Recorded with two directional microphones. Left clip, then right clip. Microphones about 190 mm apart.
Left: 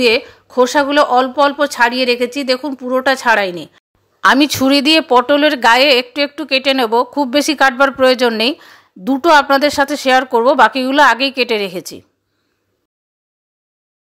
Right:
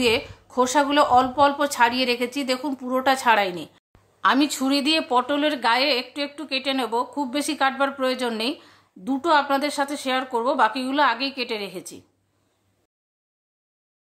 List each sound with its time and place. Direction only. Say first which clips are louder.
0.0 s speech: left 9 dB; 25° left (ahead or behind)